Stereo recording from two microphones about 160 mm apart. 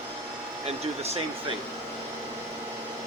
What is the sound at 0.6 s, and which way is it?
Speech, 40° right (ahead or behind).